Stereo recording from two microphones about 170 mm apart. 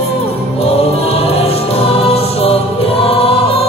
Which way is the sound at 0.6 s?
35° left (ahead or behind).